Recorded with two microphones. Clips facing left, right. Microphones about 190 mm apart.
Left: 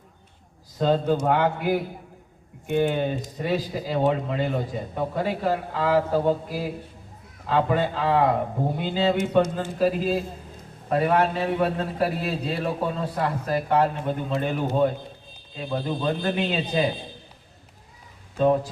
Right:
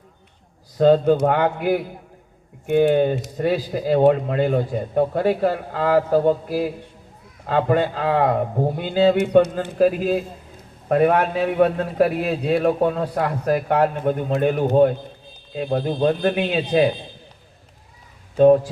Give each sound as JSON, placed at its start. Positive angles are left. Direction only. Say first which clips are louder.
{"t": 0.8, "sound": "a man's voice", "louder": "right 7 dB", "side_deg": -55}